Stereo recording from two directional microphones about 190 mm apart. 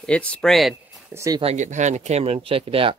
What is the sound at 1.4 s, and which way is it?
Speech, 35° right (ahead or behind).